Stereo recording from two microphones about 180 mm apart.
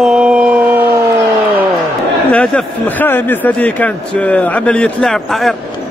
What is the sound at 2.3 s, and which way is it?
Speech, 5° left (ahead or behind).